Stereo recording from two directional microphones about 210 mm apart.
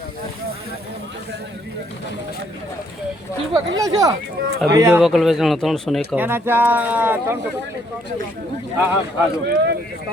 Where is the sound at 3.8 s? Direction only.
15° right (ahead or behind).